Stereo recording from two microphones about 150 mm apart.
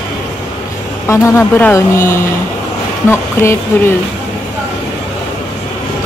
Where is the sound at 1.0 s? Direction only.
20° left (ahead or behind).